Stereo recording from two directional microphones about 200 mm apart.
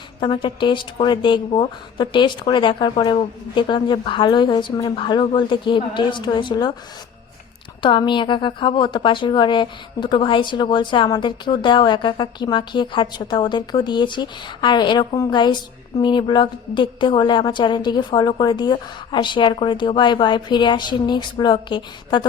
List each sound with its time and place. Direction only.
0.2 s a woman's voice: 25° left (ahead or behind)
7.8 s a woman's voice: 25° left (ahead or behind)